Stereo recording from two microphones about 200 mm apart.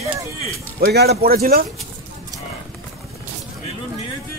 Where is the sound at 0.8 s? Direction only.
50° right (ahead or behind).